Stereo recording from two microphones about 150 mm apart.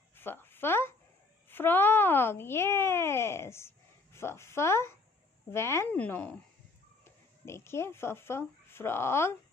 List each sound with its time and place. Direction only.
0.2 s a child's voice: 15° left (ahead or behind)